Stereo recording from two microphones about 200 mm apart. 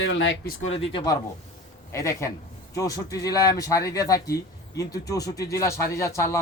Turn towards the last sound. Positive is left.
turn(degrees=15)  # may be behind; listen again after turning